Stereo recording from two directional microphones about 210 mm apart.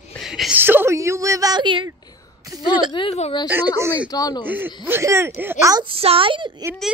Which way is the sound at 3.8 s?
10° right (ahead or behind).